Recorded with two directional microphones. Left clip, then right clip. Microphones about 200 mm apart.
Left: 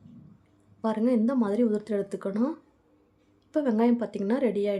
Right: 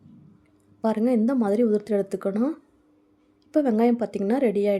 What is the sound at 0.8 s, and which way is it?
Speech, 25° right (ahead or behind).